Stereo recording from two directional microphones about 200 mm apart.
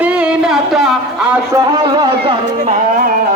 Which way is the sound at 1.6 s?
20° right (ahead or behind).